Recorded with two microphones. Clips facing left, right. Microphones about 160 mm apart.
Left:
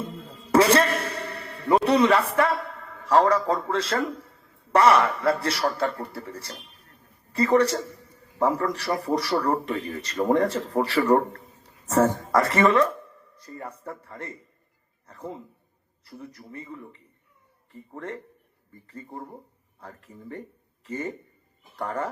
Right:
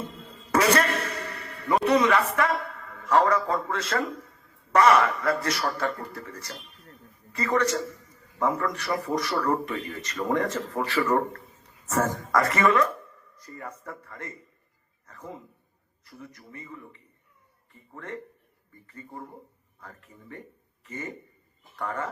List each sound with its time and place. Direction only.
0.5 s a man's voice: 30° left (ahead or behind)